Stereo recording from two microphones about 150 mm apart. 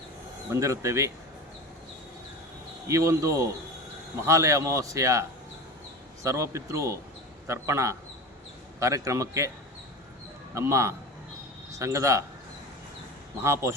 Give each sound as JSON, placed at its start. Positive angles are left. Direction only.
{"t": 0.5, "sound": "a man's voice", "side_deg": -20}
{"t": 2.8, "sound": "a man's voice", "side_deg": -20}
{"t": 6.2, "sound": "a man's voice", "side_deg": -20}
{"t": 10.5, "sound": "a man's voice", "side_deg": -20}
{"t": 13.4, "sound": "a man's voice", "side_deg": -20}